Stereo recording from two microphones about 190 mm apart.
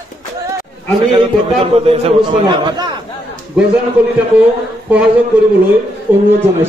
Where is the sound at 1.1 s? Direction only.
30° right (ahead or behind).